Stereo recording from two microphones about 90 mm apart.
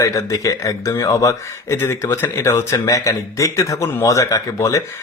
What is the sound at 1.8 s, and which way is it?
A man's voice, 25° left (ahead or behind).